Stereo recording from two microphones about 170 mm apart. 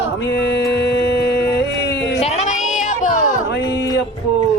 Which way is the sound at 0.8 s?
85° left.